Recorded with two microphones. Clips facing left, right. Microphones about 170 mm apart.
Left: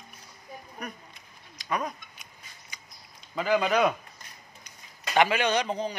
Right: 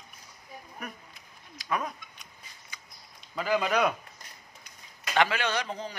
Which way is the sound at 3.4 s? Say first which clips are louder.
Left 2 dB; centre (ahead or behind).